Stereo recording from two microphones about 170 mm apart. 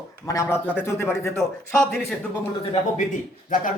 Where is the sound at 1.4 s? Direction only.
Centre (ahead or behind).